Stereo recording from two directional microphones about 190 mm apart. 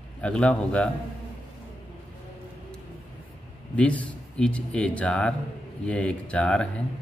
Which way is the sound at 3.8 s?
5° left (ahead or behind).